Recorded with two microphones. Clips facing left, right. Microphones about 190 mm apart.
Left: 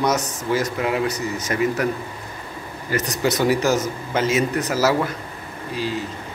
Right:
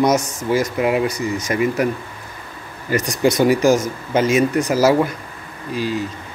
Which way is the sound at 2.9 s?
10° right (ahead or behind).